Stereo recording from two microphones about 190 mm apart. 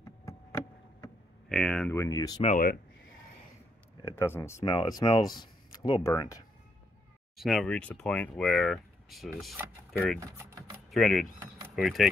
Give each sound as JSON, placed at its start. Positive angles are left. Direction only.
{"t": 0.0, "sound": "a sound", "side_deg": 15}
{"t": 1.5, "sound": "speech", "side_deg": 5}
{"t": 2.0, "sound": "speech", "side_deg": 20}
{"t": 2.4, "sound": "speech", "side_deg": 45}
{"t": 4.0, "sound": "speech", "side_deg": 15}
{"t": 7.3, "sound": "speech", "side_deg": 0}
{"t": 10.2, "sound": "a sound", "side_deg": -15}
{"t": 10.9, "sound": "speech", "side_deg": 0}